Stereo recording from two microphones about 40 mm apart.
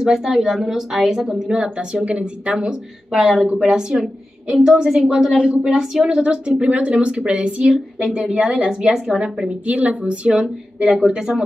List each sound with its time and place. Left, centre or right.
0.0 s a woman's voice: centre; by 2.5 s right
2.5 s a woman's voice: centre
5.7 s speech: centre
6.1 s a woman's voice: right
9.7 s a woman's voice: right; by 11.4 s centre